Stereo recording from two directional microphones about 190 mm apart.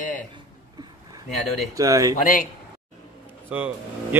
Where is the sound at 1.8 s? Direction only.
15° right (ahead or behind).